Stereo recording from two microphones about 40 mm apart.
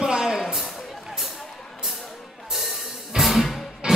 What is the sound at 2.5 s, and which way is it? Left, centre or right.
Music, centre.